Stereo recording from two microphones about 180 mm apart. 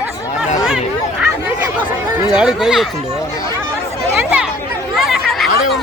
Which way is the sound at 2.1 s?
5° right (ahead or behind).